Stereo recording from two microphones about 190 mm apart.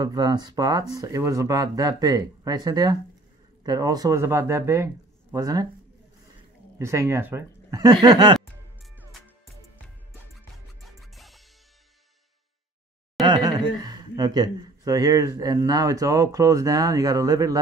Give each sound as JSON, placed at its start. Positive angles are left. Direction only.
{"t": 0.0, "sound": "speech", "side_deg": -20}
{"t": 6.8, "sound": "speech", "side_deg": -15}
{"t": 10.3, "sound": "music", "side_deg": 0}
{"t": 13.2, "sound": "speech", "side_deg": -20}